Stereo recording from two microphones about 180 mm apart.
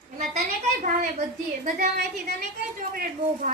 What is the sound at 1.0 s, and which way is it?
Speech, 40° right (ahead or behind).